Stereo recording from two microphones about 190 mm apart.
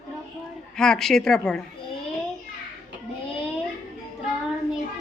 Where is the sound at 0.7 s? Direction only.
5° left (ahead or behind).